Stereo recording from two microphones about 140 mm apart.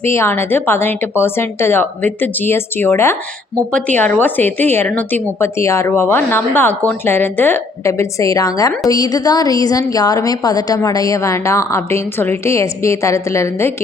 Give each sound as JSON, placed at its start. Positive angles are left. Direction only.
{"t": 0.0, "sound": "a woman's voice", "side_deg": 15}